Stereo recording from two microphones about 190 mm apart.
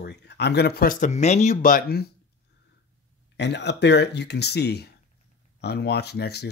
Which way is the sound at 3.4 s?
65° left (ahead or behind).